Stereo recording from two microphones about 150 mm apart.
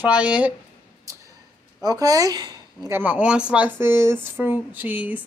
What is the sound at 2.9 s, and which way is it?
Speech, 10° right (ahead or behind).